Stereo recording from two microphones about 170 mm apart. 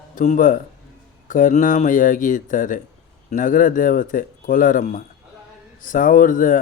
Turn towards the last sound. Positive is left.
turn(degrees=50)  # may be behind; listen again after turning